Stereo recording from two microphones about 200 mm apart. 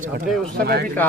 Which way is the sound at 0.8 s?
10° left (ahead or behind).